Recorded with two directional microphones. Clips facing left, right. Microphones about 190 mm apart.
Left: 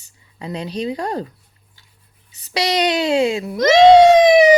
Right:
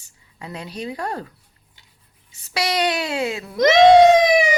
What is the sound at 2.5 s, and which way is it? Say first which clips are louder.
Speech: left 3 dB; 20° left (ahead or behind).